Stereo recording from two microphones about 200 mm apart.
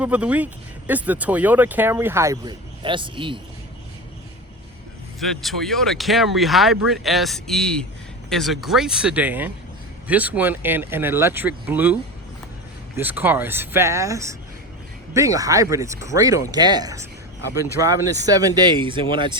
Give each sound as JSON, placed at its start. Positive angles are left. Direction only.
{"t": 0.0, "sound": "speech", "side_deg": -5}
{"t": 5.2, "sound": "speech", "side_deg": 0}
{"t": 13.0, "sound": "speech", "side_deg": -10}